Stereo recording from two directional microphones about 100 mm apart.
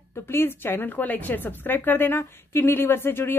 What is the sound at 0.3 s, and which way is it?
A woman's voice, 25° left (ahead or behind).